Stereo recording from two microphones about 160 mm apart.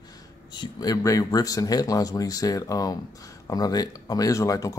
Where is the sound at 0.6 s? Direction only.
25° left (ahead or behind).